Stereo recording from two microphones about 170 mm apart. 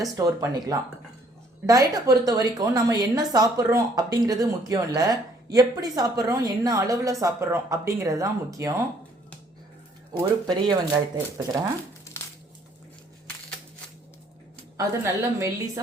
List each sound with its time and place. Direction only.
0.0 s a woman's voice: 20° right (ahead or behind)
10.1 s a woman's voice: 25° right (ahead or behind)
12.1 s crushing: 15° left (ahead or behind)
14.8 s a woman's voice: 20° right (ahead or behind)